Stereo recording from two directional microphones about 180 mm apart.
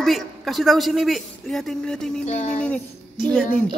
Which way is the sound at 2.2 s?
40° left (ahead or behind).